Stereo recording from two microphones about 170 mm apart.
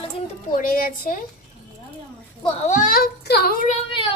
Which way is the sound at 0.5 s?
55° left (ahead or behind).